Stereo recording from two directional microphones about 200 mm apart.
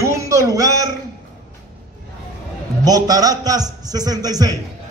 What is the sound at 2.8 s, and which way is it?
A man's voice, 20° right (ahead or behind).